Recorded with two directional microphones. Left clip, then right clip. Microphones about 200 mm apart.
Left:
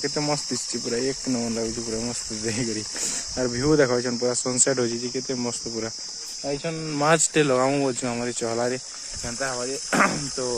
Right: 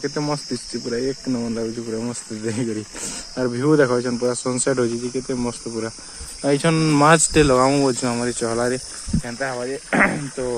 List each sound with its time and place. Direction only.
0.0 s speech: 10° left (ahead or behind)
6.4 s speech: 35° right (ahead or behind)
7.0 s speech: 5° right (ahead or behind)
9.5 s speech: 10° left (ahead or behind)